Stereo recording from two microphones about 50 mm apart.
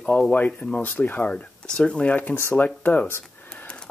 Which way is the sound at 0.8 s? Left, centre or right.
Left.